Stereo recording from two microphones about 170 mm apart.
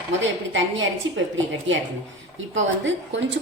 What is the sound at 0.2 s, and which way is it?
Speech, 90° right.